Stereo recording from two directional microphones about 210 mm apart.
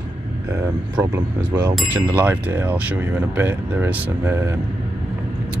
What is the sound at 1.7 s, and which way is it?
Speech, 10° right (ahead or behind).